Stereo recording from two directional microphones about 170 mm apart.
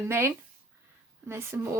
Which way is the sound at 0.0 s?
15° right (ahead or behind).